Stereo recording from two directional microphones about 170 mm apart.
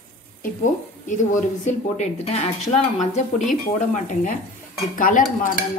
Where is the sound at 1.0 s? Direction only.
45° left (ahead or behind).